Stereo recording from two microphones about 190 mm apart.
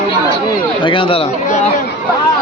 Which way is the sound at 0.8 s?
25° left (ahead or behind).